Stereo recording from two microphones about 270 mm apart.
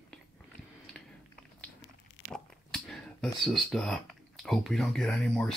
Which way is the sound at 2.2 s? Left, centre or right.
Centre.